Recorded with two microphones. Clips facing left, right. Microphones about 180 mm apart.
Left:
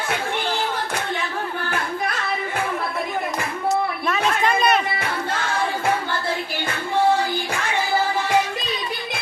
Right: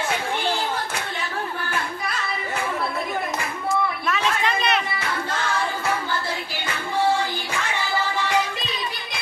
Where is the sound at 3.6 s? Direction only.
45° left (ahead or behind).